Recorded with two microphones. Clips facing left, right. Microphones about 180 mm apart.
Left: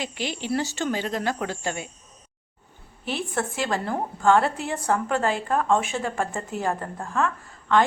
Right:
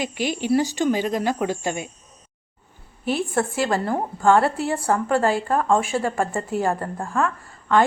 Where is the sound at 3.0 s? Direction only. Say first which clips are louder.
Right 6 dB; 45° right (ahead or behind).